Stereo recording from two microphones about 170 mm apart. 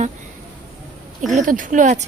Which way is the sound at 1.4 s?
50° right (ahead or behind).